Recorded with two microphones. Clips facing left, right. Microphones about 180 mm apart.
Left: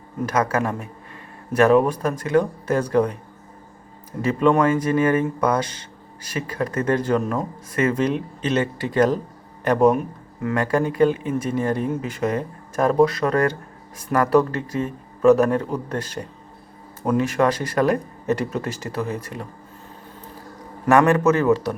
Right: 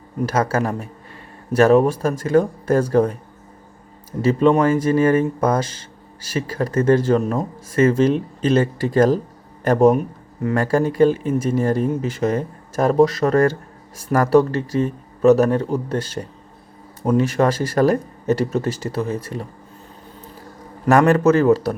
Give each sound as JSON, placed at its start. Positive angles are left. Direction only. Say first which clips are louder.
{"t": 0.3, "sound": "speech", "louder": "right 1 dB", "side_deg": -30}
{"t": 4.3, "sound": "speech", "louder": "right 2 dB", "side_deg": -30}
{"t": 6.3, "sound": "speech", "louder": "right 4 dB", "side_deg": -30}
{"t": 10.4, "sound": "speech", "louder": "right 3 dB", "side_deg": -35}
{"t": 14.1, "sound": "a man's voice", "louder": "right 3 dB", "side_deg": -30}
{"t": 20.8, "sound": "speech", "louder": "right 2 dB", "side_deg": -35}